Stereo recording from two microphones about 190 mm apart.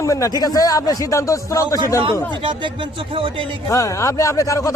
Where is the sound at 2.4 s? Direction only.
25° right (ahead or behind).